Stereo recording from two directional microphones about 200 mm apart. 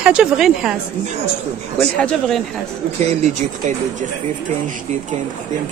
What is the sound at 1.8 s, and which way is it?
Speech, 5° left (ahead or behind).